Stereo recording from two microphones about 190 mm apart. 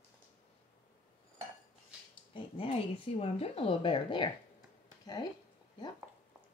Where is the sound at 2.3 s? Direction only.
25° left (ahead or behind).